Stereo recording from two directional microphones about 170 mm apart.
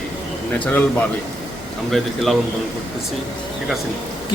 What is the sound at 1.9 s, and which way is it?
Speech, centre (ahead or behind).